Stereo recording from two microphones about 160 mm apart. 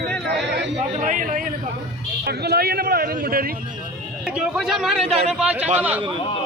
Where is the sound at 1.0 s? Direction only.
55° right (ahead or behind).